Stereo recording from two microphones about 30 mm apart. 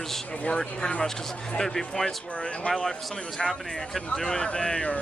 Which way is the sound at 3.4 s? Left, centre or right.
Centre.